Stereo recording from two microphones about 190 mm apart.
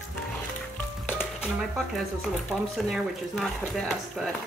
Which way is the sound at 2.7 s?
Centre (ahead or behind).